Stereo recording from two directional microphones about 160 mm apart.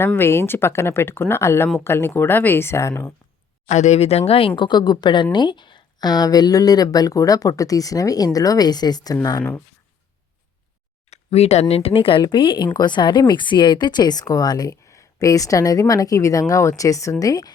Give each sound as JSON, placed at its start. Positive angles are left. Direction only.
{"t": 0.0, "sound": "speech", "side_deg": 15}
{"t": 3.7, "sound": "speech", "side_deg": 45}
{"t": 9.4, "sound": "speech", "side_deg": 5}
{"t": 11.1, "sound": "a sound", "side_deg": 40}
{"t": 11.7, "sound": "speech", "side_deg": 40}